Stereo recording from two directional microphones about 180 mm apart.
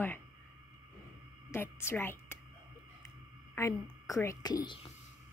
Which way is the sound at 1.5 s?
15° left (ahead or behind).